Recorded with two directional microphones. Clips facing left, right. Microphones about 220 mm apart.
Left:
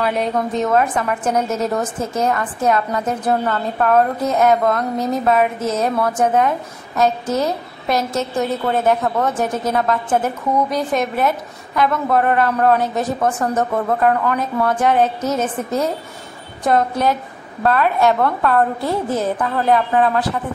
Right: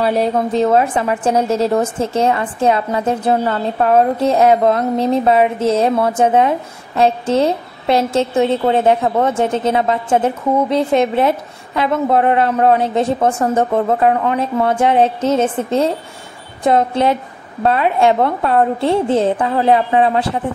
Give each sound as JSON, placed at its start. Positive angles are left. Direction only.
{"t": 0.0, "sound": "a woman's voice", "side_deg": -30}